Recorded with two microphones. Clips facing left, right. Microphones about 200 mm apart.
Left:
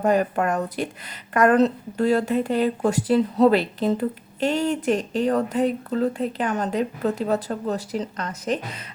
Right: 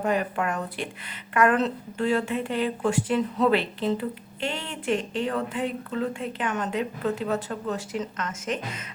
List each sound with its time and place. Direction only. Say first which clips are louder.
0.0 s a woman's voice: left 5 dB; 40° left (ahead or behind)